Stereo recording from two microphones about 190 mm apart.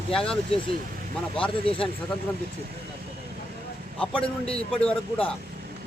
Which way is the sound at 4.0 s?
5° left (ahead or behind).